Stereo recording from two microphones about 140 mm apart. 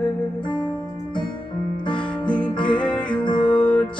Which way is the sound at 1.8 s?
35° left (ahead or behind).